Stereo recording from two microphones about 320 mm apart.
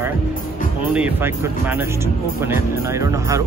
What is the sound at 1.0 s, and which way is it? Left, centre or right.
Speech, centre.